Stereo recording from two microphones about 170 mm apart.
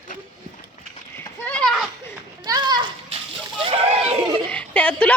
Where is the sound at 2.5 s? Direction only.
25° right (ahead or behind).